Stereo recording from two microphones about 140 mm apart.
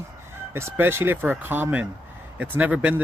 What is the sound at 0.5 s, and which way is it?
Speech, 15° right (ahead or behind).